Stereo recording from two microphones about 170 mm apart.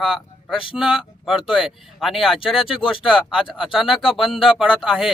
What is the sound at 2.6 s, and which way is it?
Speech, 30° left (ahead or behind).